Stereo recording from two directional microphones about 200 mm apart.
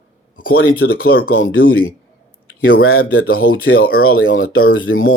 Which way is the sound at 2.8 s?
90° left.